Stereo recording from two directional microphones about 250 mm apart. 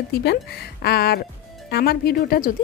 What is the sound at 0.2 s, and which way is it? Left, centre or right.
A woman's voice, left.